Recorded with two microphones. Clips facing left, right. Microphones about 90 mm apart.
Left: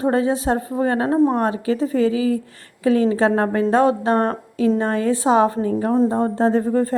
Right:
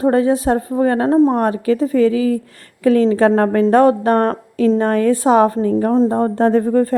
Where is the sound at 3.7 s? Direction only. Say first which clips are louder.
Right 4 dB; 55° right (ahead or behind).